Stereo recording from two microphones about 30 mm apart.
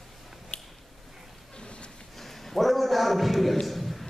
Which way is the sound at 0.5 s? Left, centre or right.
Left.